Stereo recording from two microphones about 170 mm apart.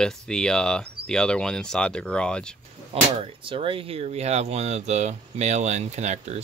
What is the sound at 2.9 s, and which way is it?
Speech, 30° right (ahead or behind).